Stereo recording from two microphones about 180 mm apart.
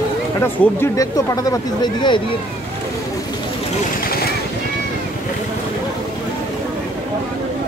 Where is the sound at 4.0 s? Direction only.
55° left (ahead or behind).